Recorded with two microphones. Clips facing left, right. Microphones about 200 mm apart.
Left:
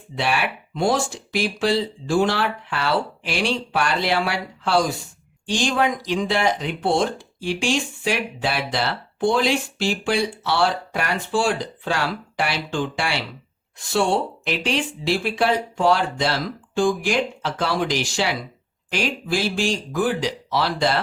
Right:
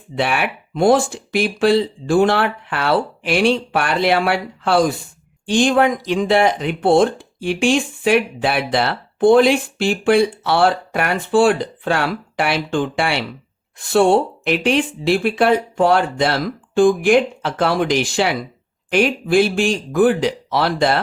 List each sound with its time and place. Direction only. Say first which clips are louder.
0.2 s speech: right 3 dB; 55° right (ahead or behind)